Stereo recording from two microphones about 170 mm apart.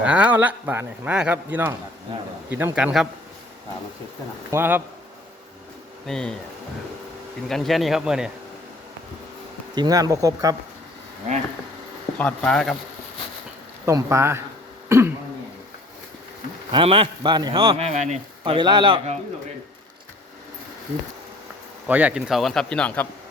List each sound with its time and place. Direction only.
0.0 s speech: 10° right (ahead or behind)
4.5 s speech: 10° right (ahead or behind)
6.1 s speech: 5° left (ahead or behind)
7.4 s speech: centre (ahead or behind)
9.7 s speech: 25° right (ahead or behind)
12.1 s speech: 5° left (ahead or behind)
13.8 s speech: 15° right (ahead or behind)
14.8 s throat clearing: 15° right (ahead or behind)
16.7 s speech: 30° right (ahead or behind)
18.4 s speech: 30° right (ahead or behind)
21.8 s speech: 10° right (ahead or behind)